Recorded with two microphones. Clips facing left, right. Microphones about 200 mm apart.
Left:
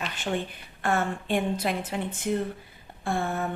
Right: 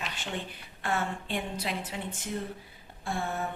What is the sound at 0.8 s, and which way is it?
A woman's voice, 50° left (ahead or behind).